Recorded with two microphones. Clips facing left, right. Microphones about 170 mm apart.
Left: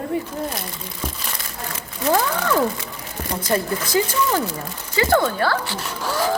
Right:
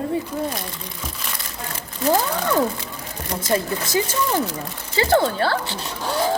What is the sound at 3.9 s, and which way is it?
Speech, 25° right (ahead or behind).